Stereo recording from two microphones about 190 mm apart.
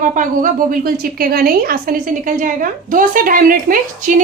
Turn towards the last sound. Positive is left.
turn(degrees=-45)  # may be behind; listen again after turning